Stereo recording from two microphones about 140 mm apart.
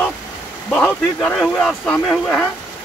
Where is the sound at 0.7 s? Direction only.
15° left (ahead or behind).